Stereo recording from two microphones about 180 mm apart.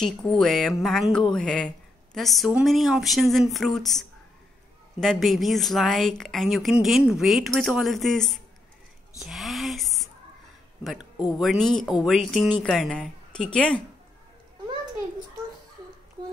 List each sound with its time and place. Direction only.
0.0 s a woman's voice: centre (ahead or behind)
5.0 s a woman's voice: centre (ahead or behind)
9.2 s whispering: centre (ahead or behind)
10.8 s a woman's voice: 5° right (ahead or behind)